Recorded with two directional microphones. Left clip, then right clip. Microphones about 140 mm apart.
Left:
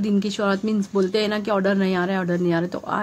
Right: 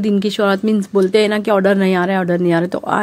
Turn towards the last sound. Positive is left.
turn(degrees=-50)  # may be behind; listen again after turning